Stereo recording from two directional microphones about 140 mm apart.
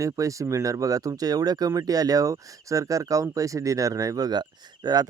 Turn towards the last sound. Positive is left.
turn(degrees=-30)  # may be behind; listen again after turning